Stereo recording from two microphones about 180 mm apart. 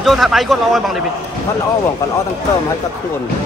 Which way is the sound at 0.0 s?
Centre (ahead or behind).